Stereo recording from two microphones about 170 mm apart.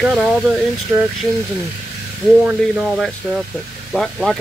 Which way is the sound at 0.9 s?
15° right (ahead or behind).